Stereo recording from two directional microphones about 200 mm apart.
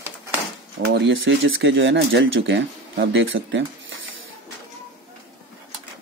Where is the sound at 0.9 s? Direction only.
70° right (ahead or behind).